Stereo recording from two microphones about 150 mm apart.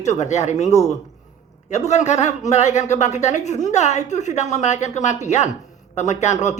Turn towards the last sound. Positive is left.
turn(degrees=50)  # may be behind; listen again after turning